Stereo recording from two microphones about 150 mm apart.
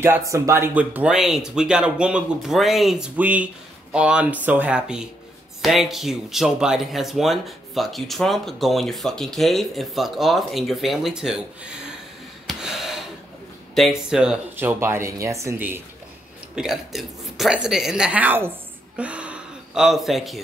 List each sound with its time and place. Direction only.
0.3 s speech: 15° right (ahead or behind)
12.4 s gasp: 5° right (ahead or behind)
13.7 s speech: centre (ahead or behind)
14.8 s speech: 20° right (ahead or behind)
16.5 s speech: centre (ahead or behind)